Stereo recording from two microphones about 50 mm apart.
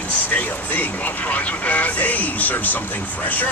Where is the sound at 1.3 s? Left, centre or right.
Left.